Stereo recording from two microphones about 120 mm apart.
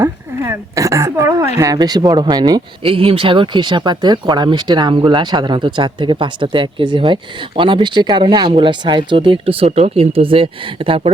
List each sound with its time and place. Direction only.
0.0 s speech: 25° right (ahead or behind)
2.8 s speech: 50° right (ahead or behind)